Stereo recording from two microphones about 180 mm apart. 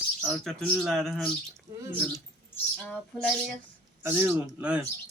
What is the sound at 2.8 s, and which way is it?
Speech, 5° left (ahead or behind).